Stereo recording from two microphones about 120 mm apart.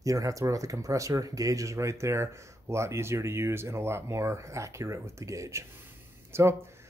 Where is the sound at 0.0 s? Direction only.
30° right (ahead or behind).